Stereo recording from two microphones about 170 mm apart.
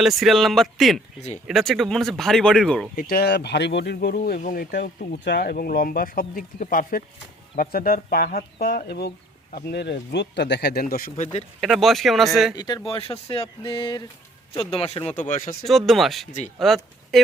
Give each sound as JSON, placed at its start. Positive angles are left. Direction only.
{"t": 0.0, "sound": "speech", "side_deg": 0}
{"t": 2.9, "sound": "speech", "side_deg": 60}
{"t": 4.4, "sound": "speech", "side_deg": 55}
{"t": 5.2, "sound": "speech", "side_deg": 70}
{"t": 11.6, "sound": "speech", "side_deg": 0}
{"t": 12.5, "sound": "speech", "side_deg": 25}
{"t": 15.1, "sound": "speech", "side_deg": 50}
{"t": 15.9, "sound": "speech", "side_deg": 0}